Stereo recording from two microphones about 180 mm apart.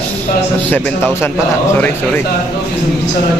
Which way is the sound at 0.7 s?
10° left (ahead or behind).